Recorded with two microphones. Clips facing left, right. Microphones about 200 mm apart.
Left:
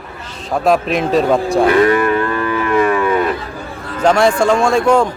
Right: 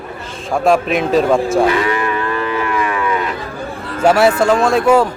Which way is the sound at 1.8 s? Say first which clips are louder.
Left 6 dB; 50° left (ahead or behind).